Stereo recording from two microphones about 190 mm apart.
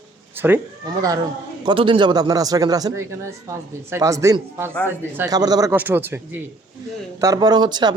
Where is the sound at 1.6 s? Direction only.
25° right (ahead or behind).